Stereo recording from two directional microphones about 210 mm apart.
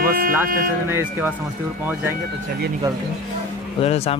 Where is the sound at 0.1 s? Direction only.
40° right (ahead or behind).